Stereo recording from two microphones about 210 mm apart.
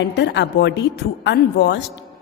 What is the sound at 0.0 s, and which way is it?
A woman's voice, 55° left (ahead or behind).